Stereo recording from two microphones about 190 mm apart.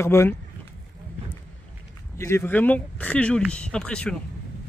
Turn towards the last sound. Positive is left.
turn(degrees=5)  # may be behind; listen again after turning